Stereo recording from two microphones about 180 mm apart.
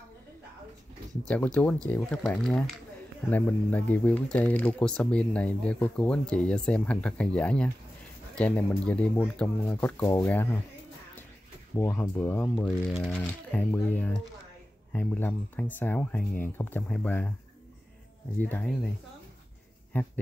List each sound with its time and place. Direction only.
1.3 s speech: 10° left (ahead or behind)
11.7 s speech: 15° left (ahead or behind)
18.4 s speech: 10° left (ahead or behind)
19.9 s speech: 10° left (ahead or behind)